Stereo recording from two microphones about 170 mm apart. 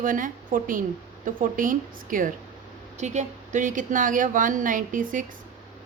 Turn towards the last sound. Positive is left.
turn(degrees=-50)  # may be behind; listen again after turning